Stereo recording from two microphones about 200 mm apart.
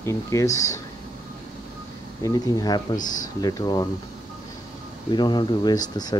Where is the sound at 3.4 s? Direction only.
20° left (ahead or behind).